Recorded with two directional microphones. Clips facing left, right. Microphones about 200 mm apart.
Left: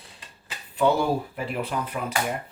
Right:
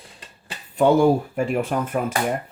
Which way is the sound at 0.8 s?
50° right (ahead or behind).